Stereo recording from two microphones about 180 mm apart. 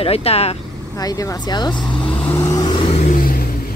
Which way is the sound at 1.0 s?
20° left (ahead or behind).